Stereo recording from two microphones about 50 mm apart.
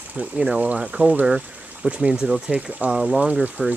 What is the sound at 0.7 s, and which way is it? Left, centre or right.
Speech, centre.